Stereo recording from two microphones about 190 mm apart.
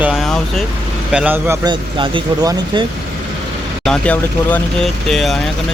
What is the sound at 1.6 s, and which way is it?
Speech, 25° right (ahead or behind).